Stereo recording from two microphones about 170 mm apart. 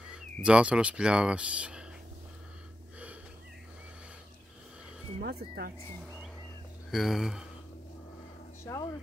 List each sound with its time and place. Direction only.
0.0 s speech: 5° right (ahead or behind)
5.2 s speech: 65° right (ahead or behind)
6.9 s speech: centre (ahead or behind)
8.6 s speech: 20° left (ahead or behind)